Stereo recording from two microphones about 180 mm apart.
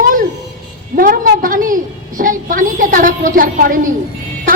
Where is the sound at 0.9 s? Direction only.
50° right (ahead or behind).